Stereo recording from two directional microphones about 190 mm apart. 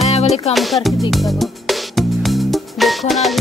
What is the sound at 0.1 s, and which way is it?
Music, 35° left (ahead or behind).